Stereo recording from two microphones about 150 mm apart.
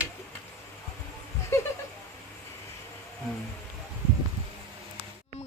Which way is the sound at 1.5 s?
15° left (ahead or behind).